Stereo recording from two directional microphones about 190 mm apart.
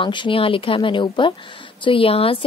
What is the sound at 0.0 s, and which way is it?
Speech, 25° left (ahead or behind).